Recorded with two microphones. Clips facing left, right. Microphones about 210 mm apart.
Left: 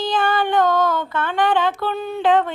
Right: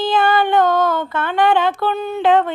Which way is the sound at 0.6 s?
55° right (ahead or behind).